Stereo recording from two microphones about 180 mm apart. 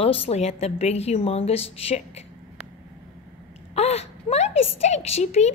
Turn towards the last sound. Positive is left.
turn(degrees=40)  # may be behind; listen again after turning